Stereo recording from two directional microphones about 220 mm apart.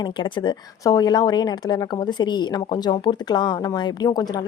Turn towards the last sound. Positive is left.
turn(degrees=20)  # may be behind; listen again after turning